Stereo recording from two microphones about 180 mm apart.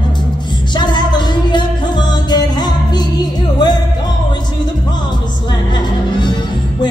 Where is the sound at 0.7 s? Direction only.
25° left (ahead or behind).